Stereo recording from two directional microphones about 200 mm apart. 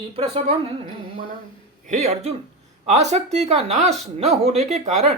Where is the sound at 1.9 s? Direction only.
35° right (ahead or behind).